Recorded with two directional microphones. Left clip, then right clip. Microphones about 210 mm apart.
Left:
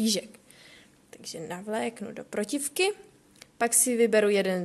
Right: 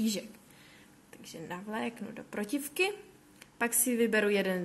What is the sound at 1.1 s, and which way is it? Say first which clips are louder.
A woman's voice: left 5 dB; 35° left (ahead or behind).